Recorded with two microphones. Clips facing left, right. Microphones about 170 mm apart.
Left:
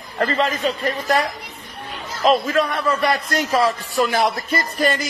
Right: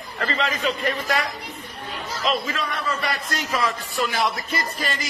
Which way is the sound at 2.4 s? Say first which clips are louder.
Left 8 dB; 50° left (ahead or behind).